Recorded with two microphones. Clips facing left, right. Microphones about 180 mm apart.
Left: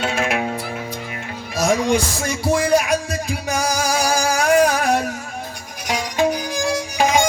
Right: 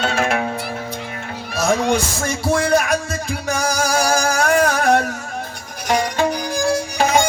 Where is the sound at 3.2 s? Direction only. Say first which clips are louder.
Right 2 dB; 55° right (ahead or behind).